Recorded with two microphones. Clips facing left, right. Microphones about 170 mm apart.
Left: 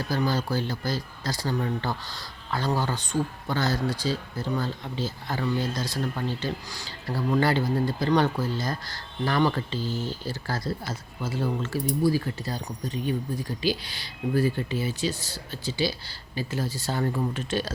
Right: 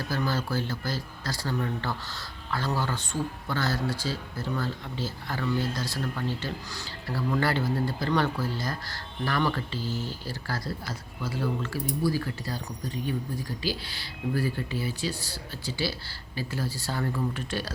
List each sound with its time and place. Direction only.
0.1 s speech: 15° left (ahead or behind)